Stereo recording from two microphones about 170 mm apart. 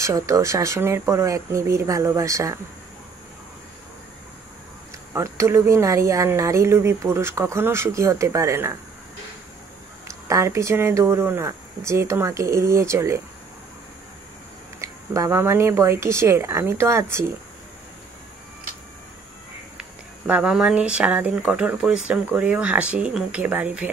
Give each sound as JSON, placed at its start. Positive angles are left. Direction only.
{"t": 0.0, "sound": "speech", "side_deg": -20}
{"t": 5.1, "sound": "speech", "side_deg": -15}
{"t": 10.0, "sound": "speech", "side_deg": -20}
{"t": 14.8, "sound": "speech", "side_deg": -15}
{"t": 20.2, "sound": "speech", "side_deg": -5}